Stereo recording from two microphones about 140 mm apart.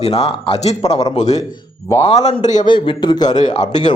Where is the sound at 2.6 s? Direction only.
35° left (ahead or behind).